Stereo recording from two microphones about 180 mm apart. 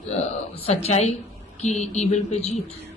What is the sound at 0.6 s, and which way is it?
Speech, 35° left (ahead or behind).